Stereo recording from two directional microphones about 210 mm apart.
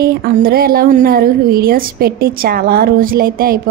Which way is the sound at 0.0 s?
45° right (ahead or behind).